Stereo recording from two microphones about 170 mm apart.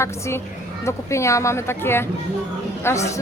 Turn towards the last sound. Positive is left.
turn(degrees=15)  # may be behind; listen again after turning